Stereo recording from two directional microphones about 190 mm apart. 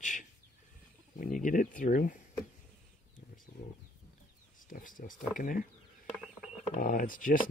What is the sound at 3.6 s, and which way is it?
Chicken, 55° left (ahead or behind).